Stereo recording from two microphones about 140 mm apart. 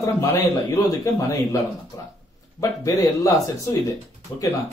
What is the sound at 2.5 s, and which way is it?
Speech, 25° left (ahead or behind).